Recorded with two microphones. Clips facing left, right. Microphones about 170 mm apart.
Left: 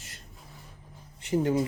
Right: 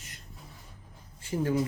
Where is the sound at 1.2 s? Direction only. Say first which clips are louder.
Left 4 dB; 20° left (ahead or behind).